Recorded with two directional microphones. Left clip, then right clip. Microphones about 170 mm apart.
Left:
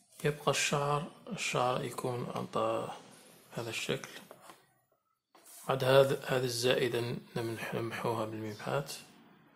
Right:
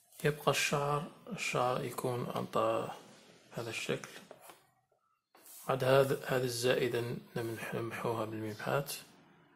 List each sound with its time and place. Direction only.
0.2 s speech: 10° right (ahead or behind)
2.0 s speech: 10° right (ahead or behind)
5.7 s speech: centre (ahead or behind)